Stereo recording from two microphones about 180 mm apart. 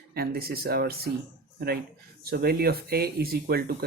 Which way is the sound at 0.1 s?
60° right (ahead or behind).